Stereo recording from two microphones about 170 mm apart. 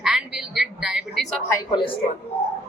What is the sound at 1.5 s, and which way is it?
Speech, 20° left (ahead or behind).